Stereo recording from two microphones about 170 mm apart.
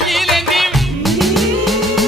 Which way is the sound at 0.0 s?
Centre (ahead or behind).